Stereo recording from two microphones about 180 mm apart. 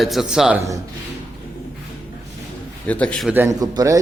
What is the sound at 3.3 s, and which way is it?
Speech, 15° right (ahead or behind).